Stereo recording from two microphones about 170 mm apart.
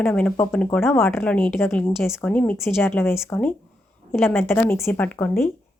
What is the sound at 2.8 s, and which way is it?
Speech, 15° left (ahead or behind).